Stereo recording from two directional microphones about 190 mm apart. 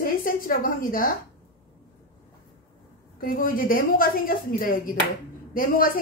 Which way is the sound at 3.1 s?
45° left (ahead or behind).